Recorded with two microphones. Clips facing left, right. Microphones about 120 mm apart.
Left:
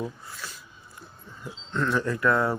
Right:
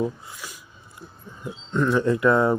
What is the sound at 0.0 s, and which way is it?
A man's voice, 15° right (ahead or behind).